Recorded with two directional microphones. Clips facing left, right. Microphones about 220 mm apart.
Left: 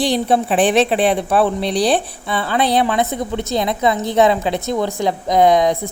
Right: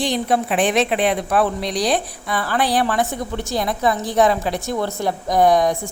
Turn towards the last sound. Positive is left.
turn(degrees=20)  # may be behind; listen again after turning